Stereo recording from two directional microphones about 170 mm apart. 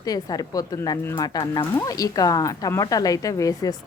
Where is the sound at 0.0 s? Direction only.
20° left (ahead or behind).